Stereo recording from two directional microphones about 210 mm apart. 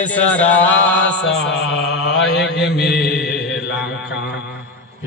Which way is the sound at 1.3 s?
55° left (ahead or behind).